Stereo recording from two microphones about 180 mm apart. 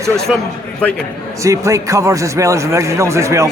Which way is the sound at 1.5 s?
20° right (ahead or behind).